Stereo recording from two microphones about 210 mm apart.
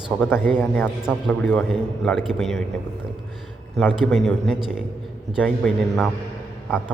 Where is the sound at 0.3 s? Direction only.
Centre (ahead or behind).